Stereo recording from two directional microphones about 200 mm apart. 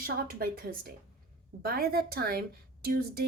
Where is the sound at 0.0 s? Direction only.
45° right (ahead or behind).